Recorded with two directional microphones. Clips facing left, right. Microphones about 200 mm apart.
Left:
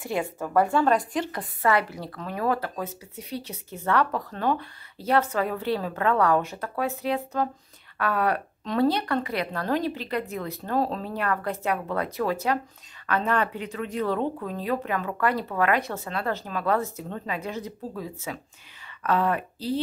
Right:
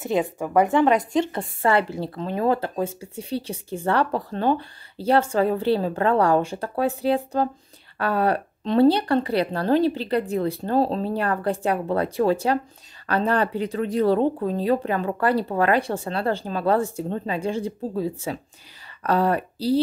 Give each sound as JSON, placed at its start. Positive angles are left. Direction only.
{"t": 0.0, "sound": "speech", "side_deg": -20}